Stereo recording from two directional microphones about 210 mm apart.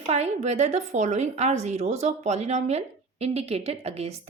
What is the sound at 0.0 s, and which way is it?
A woman's voice, 30° right (ahead or behind).